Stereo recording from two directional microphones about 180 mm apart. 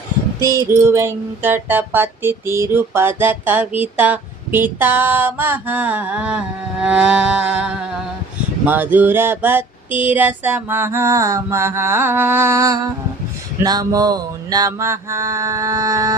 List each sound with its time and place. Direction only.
0.4 s music: 15° right (ahead or behind)